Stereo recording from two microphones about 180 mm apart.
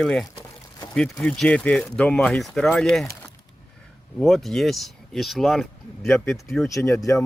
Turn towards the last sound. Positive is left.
turn(degrees=15)  # may be behind; listen again after turning